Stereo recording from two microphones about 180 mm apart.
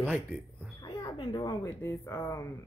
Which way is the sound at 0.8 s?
20° left (ahead or behind).